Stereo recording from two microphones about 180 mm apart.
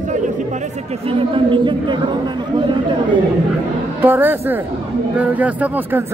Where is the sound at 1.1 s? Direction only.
30° right (ahead or behind).